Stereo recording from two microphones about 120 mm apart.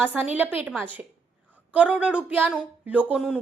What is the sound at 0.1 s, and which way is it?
Speech, 15° right (ahead or behind).